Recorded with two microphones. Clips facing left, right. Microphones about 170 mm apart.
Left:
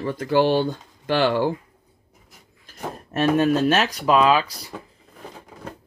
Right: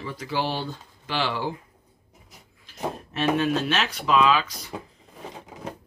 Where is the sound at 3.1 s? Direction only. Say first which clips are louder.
Left 5 dB; 45° left (ahead or behind).